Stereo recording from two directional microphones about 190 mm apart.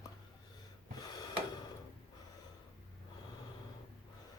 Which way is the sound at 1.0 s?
20° left (ahead or behind).